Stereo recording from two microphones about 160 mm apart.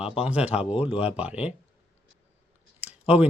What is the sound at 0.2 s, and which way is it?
Speech, 10° right (ahead or behind).